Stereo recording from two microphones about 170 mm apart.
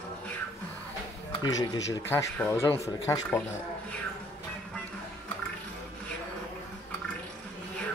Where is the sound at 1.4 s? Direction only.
20° left (ahead or behind).